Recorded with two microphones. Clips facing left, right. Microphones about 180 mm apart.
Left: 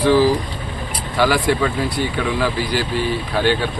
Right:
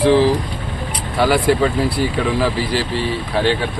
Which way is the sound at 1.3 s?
30° right (ahead or behind).